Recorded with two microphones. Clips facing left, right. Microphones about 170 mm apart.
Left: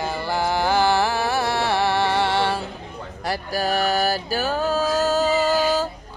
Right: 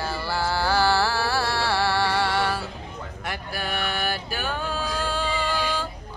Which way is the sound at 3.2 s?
35° left (ahead or behind).